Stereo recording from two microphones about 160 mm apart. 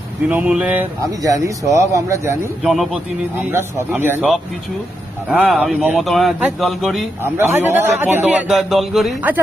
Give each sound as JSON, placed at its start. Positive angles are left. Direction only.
{"t": 0.3, "sound": "a man's voice", "side_deg": -5}
{"t": 1.2, "sound": "speech", "side_deg": -20}
{"t": 2.6, "sound": "a man's voice", "side_deg": 0}
{"t": 3.3, "sound": "a man's voice", "side_deg": -15}
{"t": 5.3, "sound": "a man's voice", "side_deg": -5}
{"t": 7.2, "sound": "a man's voice", "side_deg": -15}